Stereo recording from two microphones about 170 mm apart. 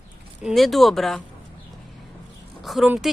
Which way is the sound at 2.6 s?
Centre (ahead or behind).